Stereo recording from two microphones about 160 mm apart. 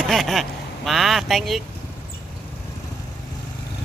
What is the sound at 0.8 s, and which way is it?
Speech, centre (ahead or behind).